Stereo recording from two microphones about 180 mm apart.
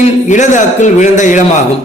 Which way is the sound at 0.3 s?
45° left (ahead or behind).